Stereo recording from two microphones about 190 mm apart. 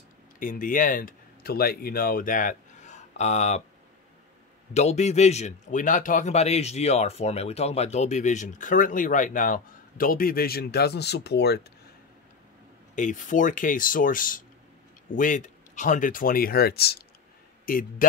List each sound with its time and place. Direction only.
0.4 s speech: 45° left (ahead or behind)
4.7 s speech: 35° left (ahead or behind); by 11.6 s 60° left (ahead or behind)
12.9 s speech: 40° left (ahead or behind)